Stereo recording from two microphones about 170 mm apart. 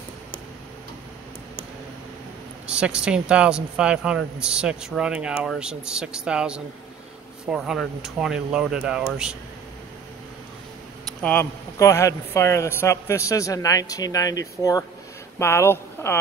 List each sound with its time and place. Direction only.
2.6 s speech: 5° right (ahead or behind)
11.1 s speech: 5° left (ahead or behind)